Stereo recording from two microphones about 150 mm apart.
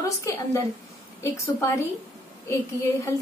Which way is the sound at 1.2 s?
15° left (ahead or behind).